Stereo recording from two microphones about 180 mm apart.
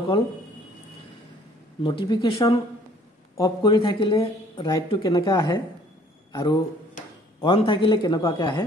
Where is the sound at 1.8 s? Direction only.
25° left (ahead or behind).